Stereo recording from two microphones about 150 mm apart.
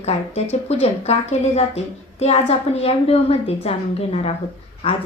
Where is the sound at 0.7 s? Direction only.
45° left (ahead or behind).